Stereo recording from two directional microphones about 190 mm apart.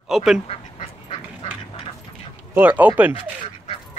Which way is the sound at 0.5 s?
30° left (ahead or behind).